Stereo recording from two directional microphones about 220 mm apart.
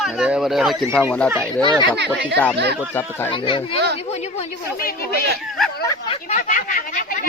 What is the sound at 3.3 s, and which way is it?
A woman's voice, 25° left (ahead or behind).